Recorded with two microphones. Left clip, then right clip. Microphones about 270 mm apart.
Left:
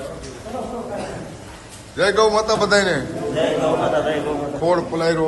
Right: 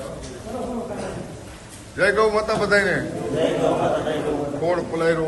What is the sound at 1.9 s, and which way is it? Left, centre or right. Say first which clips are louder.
A man's voice: left 2 dB; centre.